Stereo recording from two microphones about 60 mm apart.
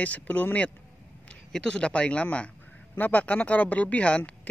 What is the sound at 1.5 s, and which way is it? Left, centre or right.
Speech, centre.